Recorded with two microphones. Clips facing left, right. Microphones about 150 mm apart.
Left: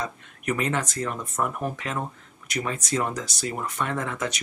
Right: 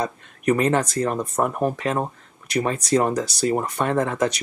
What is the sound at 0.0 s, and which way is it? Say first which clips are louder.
Speech: right 7 dB; 35° right (ahead or behind).